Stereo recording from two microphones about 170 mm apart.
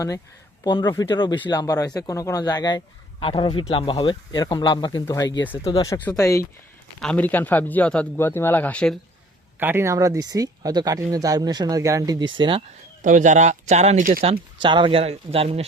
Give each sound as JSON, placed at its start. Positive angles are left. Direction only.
{"t": 0.6, "sound": "a man's voice", "side_deg": 25}
{"t": 7.0, "sound": "a man's voice", "side_deg": 5}
{"t": 9.6, "sound": "speech", "side_deg": -10}
{"t": 13.0, "sound": "speech", "side_deg": -50}
{"t": 14.6, "sound": "a man's voice", "side_deg": -30}